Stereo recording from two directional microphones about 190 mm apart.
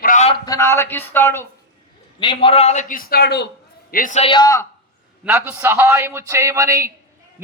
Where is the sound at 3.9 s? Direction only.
45° left (ahead or behind); by 4.6 s 20° left (ahead or behind).